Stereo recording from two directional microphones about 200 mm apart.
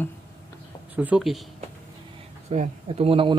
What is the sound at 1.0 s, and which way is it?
Speech, 5° right (ahead or behind).